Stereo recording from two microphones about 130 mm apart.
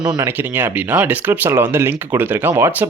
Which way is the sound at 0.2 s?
15° right (ahead or behind).